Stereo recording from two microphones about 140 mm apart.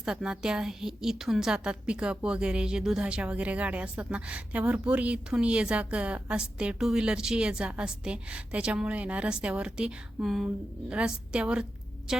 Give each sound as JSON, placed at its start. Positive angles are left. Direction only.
{"t": 0.0, "sound": "a woman's voice", "side_deg": -5}